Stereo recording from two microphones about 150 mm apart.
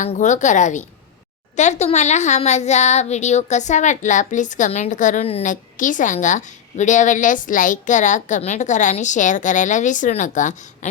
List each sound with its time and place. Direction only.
0.0 s speech: 55° left (ahead or behind)
5.5 s a woman's voice: 60° left (ahead or behind)